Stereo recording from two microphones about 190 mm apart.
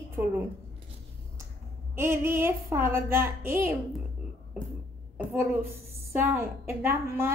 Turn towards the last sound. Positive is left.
turn(degrees=-15)  # may be behind; listen again after turning